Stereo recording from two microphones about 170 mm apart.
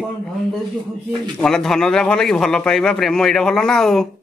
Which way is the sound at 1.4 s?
5° left (ahead or behind).